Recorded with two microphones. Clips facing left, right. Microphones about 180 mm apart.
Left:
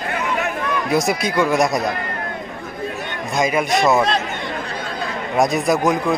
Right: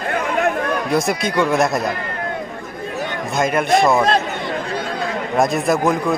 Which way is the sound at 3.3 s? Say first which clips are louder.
Right 2 dB; centre (ahead or behind).